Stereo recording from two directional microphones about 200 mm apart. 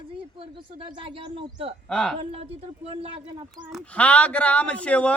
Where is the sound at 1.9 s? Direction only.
5° left (ahead or behind).